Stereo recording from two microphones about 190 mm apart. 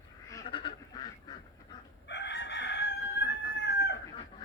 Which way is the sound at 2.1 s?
65° left (ahead or behind).